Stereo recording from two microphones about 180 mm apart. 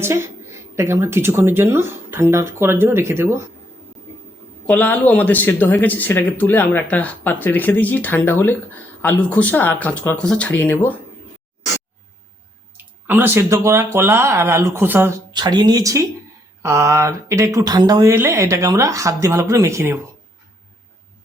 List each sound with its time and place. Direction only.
0.0 s speech: 15° right (ahead or behind)
4.6 s speech: 10° left (ahead or behind)
12.7 s speech: 10° right (ahead or behind)
15.3 s speech: 25° right (ahead or behind)